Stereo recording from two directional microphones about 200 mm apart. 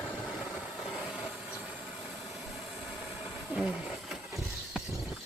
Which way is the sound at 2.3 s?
Centre (ahead or behind).